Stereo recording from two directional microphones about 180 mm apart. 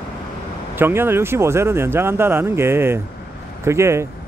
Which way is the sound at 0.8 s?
10° right (ahead or behind).